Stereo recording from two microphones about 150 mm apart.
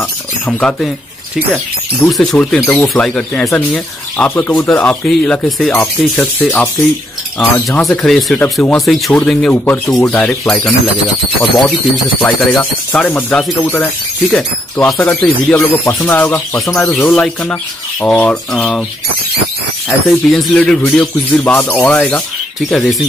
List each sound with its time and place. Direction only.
0.5 s speech: 5° left (ahead or behind)
2.0 s speech: 5° left (ahead or behind)
12.2 s speech: 5° left (ahead or behind)
15.5 s speech: 20° left (ahead or behind)
20.1 s speech: centre (ahead or behind)